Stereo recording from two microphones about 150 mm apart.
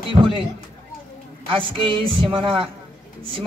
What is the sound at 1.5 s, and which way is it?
A man's voice, 35° right (ahead or behind).